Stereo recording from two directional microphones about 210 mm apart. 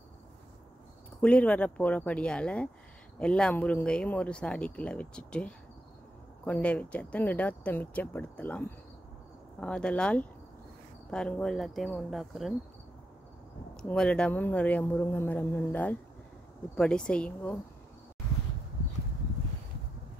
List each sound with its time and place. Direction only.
1.2 s speech: 5° left (ahead or behind)
13.7 s speech: 5° left (ahead or behind)